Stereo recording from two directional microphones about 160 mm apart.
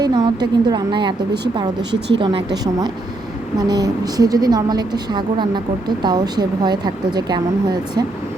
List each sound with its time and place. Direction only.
0.0 s a woman's voice: 25° right (ahead or behind)
1.9 s speech: 90° right
3.7 s a woman's voice: 25° right (ahead or behind)